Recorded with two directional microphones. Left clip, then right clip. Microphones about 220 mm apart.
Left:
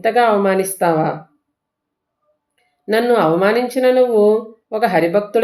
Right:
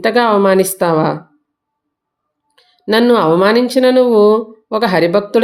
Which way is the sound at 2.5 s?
50° right (ahead or behind).